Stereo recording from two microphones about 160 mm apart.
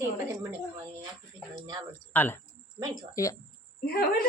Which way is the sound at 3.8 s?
75° left (ahead or behind).